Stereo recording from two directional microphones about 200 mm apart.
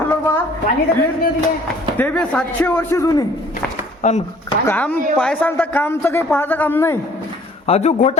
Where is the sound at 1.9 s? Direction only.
5° left (ahead or behind).